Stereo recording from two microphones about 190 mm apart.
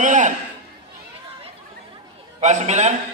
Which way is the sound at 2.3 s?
35° right (ahead or behind).